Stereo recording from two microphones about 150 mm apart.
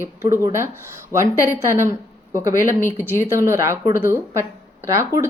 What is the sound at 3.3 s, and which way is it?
Speech, 15° right (ahead or behind).